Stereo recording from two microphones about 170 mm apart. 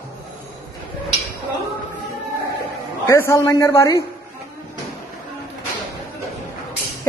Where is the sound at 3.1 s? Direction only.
15° left (ahead or behind).